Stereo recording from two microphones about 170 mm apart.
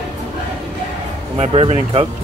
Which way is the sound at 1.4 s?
35° right (ahead or behind).